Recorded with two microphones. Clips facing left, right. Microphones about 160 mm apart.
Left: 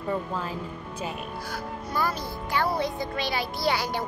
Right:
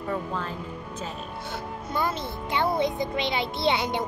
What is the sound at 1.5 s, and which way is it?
Speech, 25° right (ahead or behind).